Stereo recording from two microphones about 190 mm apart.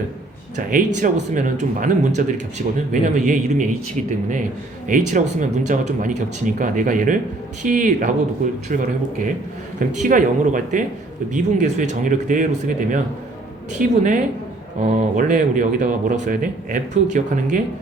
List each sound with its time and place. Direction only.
0.5 s speech: 40° right (ahead or behind)
4.9 s speech: 40° right (ahead or behind)